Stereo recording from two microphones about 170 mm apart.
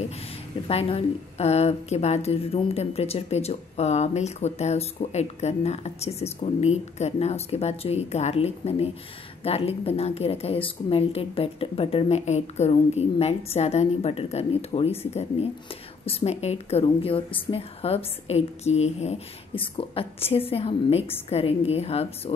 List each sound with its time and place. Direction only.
0.7 s a woman's voice: 35° left (ahead or behind)